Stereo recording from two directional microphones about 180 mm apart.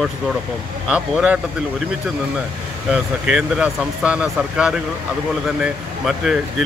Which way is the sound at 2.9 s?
5° right (ahead or behind).